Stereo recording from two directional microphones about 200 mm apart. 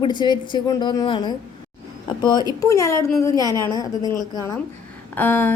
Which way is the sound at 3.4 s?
20° right (ahead or behind).